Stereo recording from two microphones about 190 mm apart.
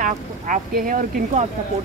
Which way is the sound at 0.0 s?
45° right (ahead or behind).